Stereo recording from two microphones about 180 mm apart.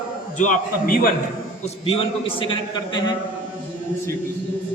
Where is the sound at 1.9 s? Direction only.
30° left (ahead or behind).